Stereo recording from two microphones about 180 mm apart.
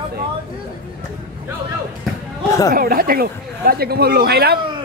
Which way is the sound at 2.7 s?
55° right (ahead or behind).